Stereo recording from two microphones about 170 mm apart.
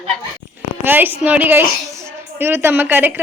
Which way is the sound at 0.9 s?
10° right (ahead or behind).